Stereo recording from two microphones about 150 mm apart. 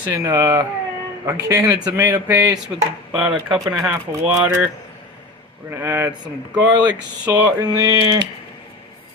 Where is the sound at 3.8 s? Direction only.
20° right (ahead or behind).